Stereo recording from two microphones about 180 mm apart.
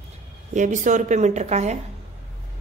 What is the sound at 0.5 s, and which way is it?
A woman's voice, 45° right (ahead or behind).